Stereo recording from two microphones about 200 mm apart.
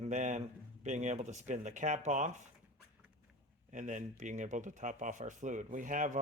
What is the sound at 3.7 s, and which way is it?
Speech, 40° right (ahead or behind).